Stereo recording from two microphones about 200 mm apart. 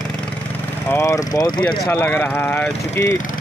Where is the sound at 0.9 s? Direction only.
15° left (ahead or behind).